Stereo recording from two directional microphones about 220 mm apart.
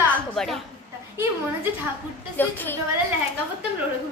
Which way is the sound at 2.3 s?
10° left (ahead or behind).